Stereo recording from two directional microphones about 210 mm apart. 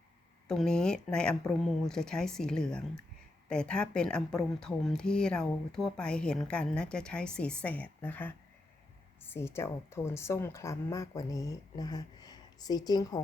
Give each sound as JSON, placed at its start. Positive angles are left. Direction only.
{"t": 0.4, "sound": "speech", "side_deg": 5}